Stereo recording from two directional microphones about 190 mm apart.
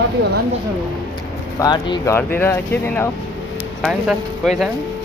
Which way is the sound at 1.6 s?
25° left (ahead or behind).